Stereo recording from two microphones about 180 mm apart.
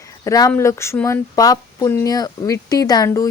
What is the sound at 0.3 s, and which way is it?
Speech, 20° left (ahead or behind).